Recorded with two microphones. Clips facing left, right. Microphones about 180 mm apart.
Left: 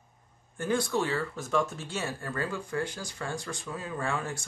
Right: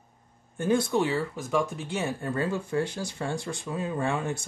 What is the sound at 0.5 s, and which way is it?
Speech, 25° right (ahead or behind).